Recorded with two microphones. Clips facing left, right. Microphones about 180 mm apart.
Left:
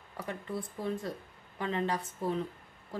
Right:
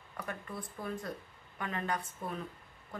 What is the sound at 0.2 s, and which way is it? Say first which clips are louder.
A woman's voice: left 4 dB; 25° left (ahead or behind).